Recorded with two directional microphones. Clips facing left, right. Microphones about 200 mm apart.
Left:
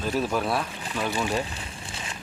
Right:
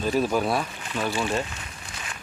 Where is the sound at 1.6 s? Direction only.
30° left (ahead or behind).